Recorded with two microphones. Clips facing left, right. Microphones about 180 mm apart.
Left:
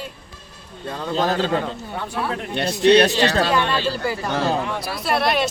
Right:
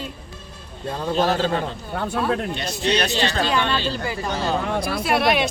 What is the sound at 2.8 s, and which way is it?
Speech, 60° left (ahead or behind).